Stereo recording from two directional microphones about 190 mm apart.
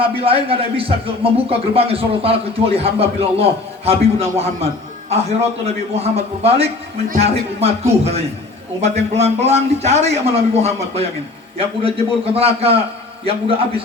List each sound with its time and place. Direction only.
0.0 s a man's voice: 30° right (ahead or behind)